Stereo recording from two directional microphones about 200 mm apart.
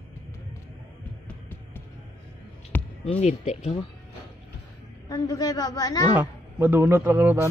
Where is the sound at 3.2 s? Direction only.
35° left (ahead or behind).